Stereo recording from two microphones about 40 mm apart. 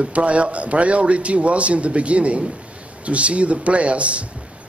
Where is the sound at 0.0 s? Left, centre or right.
Right.